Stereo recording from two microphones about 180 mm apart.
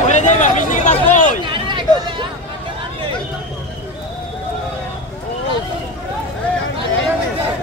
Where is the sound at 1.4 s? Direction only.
25° right (ahead or behind).